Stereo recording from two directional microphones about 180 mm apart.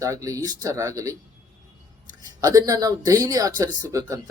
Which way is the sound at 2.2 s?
20° right (ahead or behind).